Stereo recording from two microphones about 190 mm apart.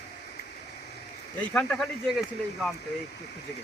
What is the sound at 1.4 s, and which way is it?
Speech, 5° left (ahead or behind).